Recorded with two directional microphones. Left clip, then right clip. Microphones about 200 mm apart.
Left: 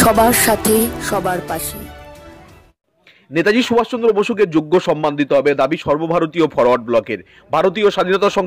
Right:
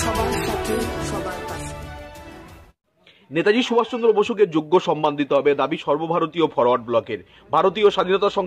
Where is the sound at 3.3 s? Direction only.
15° left (ahead or behind).